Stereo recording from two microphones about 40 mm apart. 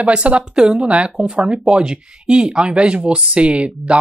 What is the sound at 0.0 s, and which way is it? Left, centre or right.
Speech, right.